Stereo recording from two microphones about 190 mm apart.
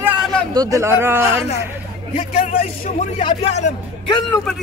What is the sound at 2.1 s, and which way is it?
A man's voice, 40° left (ahead or behind).